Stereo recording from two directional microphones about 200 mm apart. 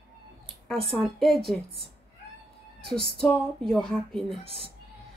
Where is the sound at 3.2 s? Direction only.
5° left (ahead or behind).